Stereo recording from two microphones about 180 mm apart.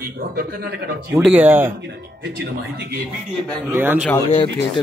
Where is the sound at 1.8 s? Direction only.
65° right (ahead or behind).